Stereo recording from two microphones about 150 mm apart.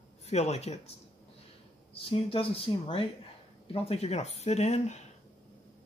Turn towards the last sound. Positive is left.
turn(degrees=50)  # may be behind; listen again after turning